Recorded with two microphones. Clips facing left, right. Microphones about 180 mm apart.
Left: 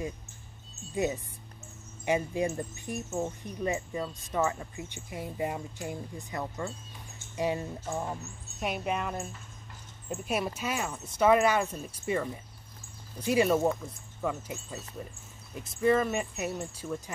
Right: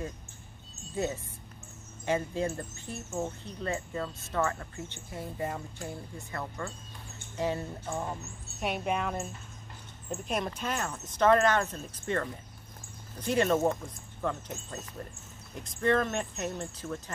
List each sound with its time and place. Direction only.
0.9 s speech: 15° left (ahead or behind)